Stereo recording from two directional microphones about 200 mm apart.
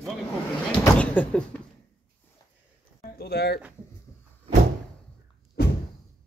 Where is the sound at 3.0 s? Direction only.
50° left (ahead or behind).